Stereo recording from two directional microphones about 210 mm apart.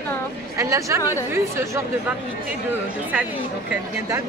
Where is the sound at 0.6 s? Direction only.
15° right (ahead or behind).